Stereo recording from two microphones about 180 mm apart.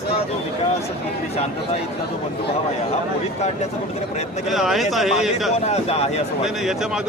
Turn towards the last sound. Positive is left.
turn(degrees=0)  # may be behind; listen again after turning